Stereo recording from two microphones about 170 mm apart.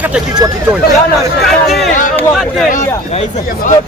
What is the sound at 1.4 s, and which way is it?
Speech, centre (ahead or behind).